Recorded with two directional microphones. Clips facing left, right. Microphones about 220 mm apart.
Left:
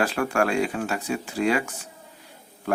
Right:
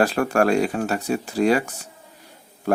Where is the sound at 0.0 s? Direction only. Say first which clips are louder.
Right 4 dB; 40° right (ahead or behind).